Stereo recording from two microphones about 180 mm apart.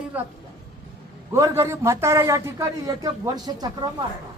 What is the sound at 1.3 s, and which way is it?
A man's voice, 15° right (ahead or behind).